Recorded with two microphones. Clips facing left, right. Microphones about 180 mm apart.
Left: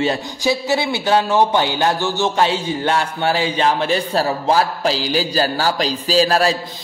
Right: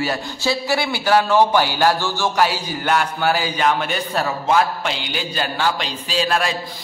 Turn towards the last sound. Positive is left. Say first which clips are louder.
# left 5 dB
turn(degrees=35)  # may be behind; listen again after turning